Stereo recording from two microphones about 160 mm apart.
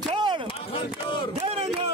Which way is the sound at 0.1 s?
30° right (ahead or behind).